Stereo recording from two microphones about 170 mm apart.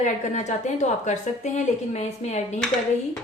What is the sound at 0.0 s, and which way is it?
A woman's voice, 45° left (ahead or behind).